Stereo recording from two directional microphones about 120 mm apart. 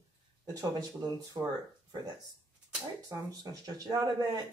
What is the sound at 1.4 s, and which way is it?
Speech, 35° right (ahead or behind).